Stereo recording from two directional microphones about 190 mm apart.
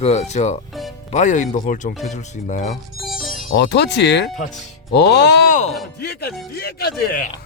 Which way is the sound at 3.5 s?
65° left (ahead or behind).